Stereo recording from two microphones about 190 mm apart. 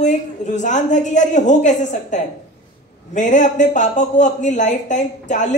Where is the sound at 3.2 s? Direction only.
40° left (ahead or behind).